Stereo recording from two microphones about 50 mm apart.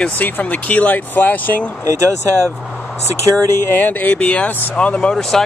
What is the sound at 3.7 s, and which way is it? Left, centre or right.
Speech, left.